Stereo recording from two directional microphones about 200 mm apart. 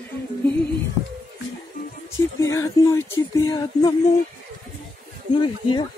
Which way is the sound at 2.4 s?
15° left (ahead or behind).